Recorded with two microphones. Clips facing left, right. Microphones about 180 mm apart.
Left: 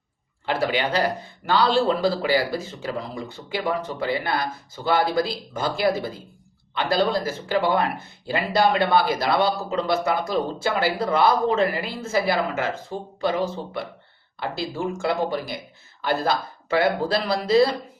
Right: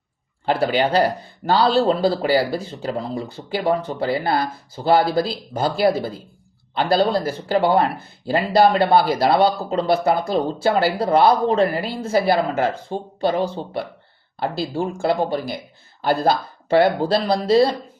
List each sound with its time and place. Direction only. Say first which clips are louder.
0.4 s speech: right 4 dB; 35° right (ahead or behind)